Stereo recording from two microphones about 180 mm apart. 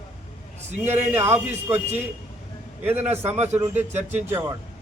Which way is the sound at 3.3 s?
40° right (ahead or behind).